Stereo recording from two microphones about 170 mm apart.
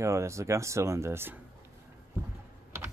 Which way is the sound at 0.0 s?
15° right (ahead or behind).